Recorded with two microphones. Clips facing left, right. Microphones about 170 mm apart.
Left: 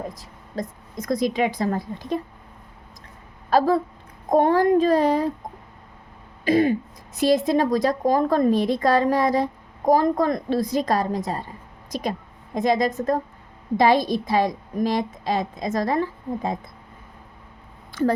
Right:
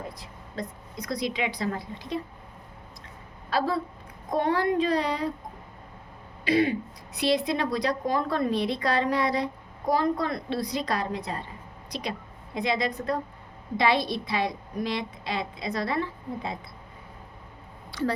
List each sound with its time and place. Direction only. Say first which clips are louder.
0.2 s a woman's voice: left 5 dB; 45° left (ahead or behind)
3.5 s a woman's voice: left 8 dB; 50° left (ahead or behind)
6.4 s a woman's voice: left 5 dB; 45° left (ahead or behind)
17.9 s speech: left 6 dB; 50° left (ahead or behind)